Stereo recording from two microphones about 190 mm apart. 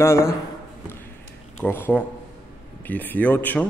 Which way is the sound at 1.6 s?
10° left (ahead or behind).